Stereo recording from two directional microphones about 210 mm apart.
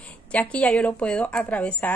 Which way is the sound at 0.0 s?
5° left (ahead or behind).